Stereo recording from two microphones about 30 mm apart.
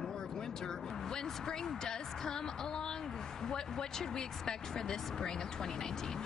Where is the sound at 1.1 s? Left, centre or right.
Left.